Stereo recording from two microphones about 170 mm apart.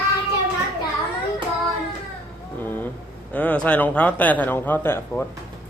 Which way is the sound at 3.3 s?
10° left (ahead or behind).